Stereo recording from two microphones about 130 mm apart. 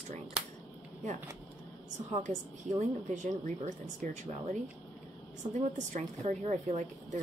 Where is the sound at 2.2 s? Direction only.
70° right (ahead or behind).